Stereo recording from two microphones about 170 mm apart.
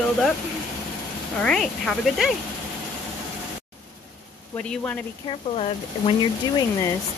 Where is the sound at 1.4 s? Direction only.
5° left (ahead or behind).